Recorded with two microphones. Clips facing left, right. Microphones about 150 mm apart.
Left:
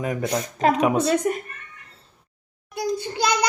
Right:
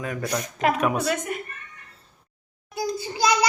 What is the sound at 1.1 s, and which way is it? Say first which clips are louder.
Speech: left 7 dB; 35° left (ahead or behind).